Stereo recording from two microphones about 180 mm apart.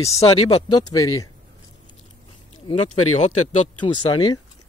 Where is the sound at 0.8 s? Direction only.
20° left (ahead or behind).